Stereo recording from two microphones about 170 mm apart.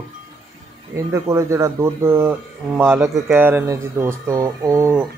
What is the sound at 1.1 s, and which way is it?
Speech, 15° right (ahead or behind).